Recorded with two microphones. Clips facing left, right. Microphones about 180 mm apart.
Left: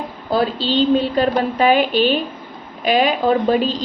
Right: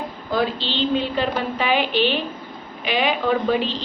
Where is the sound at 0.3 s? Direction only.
35° left (ahead or behind).